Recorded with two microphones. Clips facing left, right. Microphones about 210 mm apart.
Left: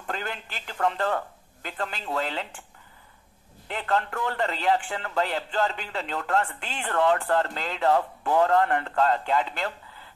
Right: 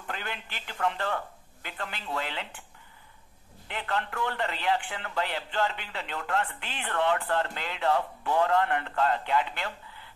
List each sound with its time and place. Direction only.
0.0 s a man's voice: 45° left (ahead or behind)
3.6 s a man's voice: 45° left (ahead or behind)